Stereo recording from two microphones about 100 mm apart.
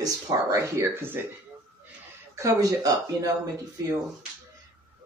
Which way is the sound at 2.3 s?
35° right (ahead or behind).